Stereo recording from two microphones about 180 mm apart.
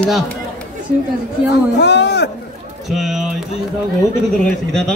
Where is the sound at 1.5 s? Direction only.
70° left (ahead or behind).